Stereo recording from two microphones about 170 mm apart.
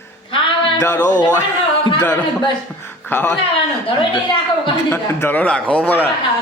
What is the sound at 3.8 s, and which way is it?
Speech, 30° left (ahead or behind).